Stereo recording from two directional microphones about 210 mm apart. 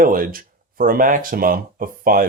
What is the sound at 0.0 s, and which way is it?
Speech, 40° right (ahead or behind).